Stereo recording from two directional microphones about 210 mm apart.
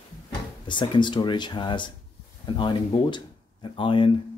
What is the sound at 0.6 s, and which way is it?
Speech, 20° left (ahead or behind).